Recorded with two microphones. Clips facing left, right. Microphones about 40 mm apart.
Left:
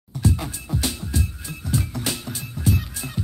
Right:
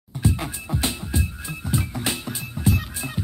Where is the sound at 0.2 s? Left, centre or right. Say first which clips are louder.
Even; right.